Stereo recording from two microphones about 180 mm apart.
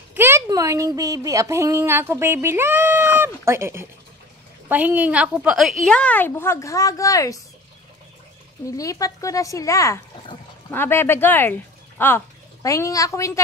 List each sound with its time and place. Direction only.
0.1 s speech: 15° right (ahead or behind); by 7.3 s 20° left (ahead or behind)
8.6 s speech: 20° left (ahead or behind)